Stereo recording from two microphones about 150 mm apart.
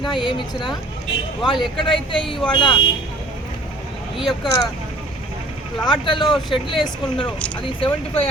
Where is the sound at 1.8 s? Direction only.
35° left (ahead or behind).